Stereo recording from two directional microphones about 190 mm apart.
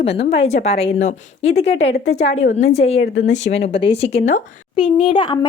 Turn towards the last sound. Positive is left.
turn(degrees=25)  # may be behind; listen again after turning